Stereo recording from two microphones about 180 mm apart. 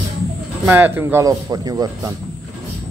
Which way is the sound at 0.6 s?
10° right (ahead or behind).